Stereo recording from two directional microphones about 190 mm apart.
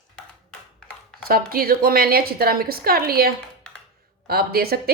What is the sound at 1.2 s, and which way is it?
A woman's voice, 50° right (ahead or behind).